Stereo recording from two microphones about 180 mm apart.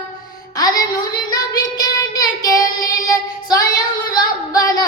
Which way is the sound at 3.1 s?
20° left (ahead or behind).